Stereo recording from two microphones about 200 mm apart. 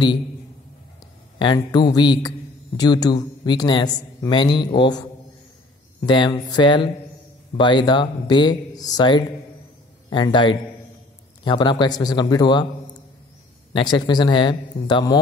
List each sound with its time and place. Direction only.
1.4 s a man's voice: 20° left (ahead or behind)
6.0 s a man's voice: 20° left (ahead or behind)
13.7 s a man's voice: 20° left (ahead or behind)